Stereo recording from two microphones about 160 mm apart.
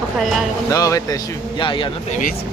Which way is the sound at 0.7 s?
20° left (ahead or behind).